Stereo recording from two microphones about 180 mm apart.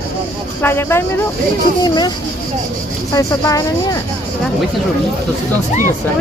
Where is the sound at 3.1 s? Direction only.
20° left (ahead or behind).